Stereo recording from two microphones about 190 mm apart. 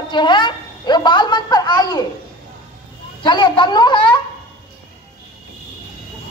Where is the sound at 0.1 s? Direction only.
25° left (ahead or behind).